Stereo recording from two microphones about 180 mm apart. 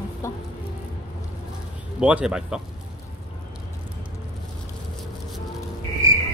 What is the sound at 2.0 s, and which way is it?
Speech, 5° right (ahead or behind).